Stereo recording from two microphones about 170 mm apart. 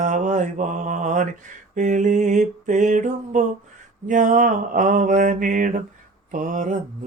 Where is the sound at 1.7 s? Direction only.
45° right (ahead or behind).